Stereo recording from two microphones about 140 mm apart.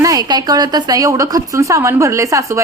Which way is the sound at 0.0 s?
25° right (ahead or behind).